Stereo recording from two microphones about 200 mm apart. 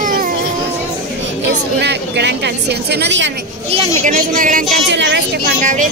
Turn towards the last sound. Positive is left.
turn(degrees=-40)  # may be behind; listen again after turning